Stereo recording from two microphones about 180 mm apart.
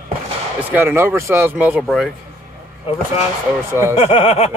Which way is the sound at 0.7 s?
10° right (ahead or behind).